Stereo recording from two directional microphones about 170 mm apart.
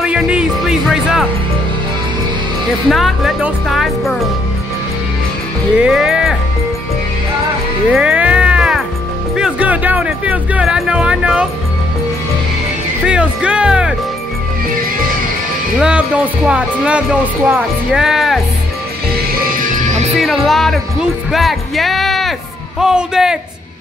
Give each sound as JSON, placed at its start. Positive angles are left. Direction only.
{"t": 0.0, "sound": "music", "side_deg": -5}
{"t": 2.9, "sound": "speech", "side_deg": 0}
{"t": 5.8, "sound": "speech", "side_deg": -5}
{"t": 7.9, "sound": "music", "side_deg": -5}
{"t": 9.3, "sound": "speech", "side_deg": -5}
{"t": 13.0, "sound": "speech", "side_deg": -5}
{"t": 15.8, "sound": "speech", "side_deg": -5}
{"t": 19.4, "sound": "music", "side_deg": -55}
{"t": 20.2, "sound": "speech", "side_deg": 0}